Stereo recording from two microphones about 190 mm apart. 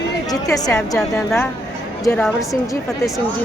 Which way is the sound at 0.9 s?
5° left (ahead or behind).